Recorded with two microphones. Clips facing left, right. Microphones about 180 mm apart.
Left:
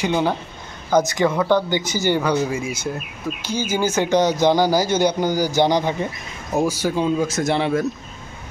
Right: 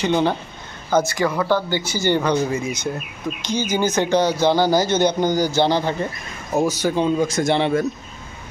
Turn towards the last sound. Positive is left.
turn(degrees=0)  # may be behind; listen again after turning